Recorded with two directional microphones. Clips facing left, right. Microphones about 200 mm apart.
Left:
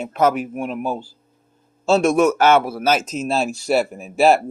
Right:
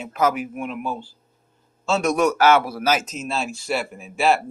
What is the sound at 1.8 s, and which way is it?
Speech, 30° left (ahead or behind).